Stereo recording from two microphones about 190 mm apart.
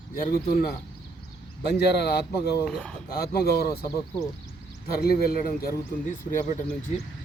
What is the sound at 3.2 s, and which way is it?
Speech, 55° left (ahead or behind).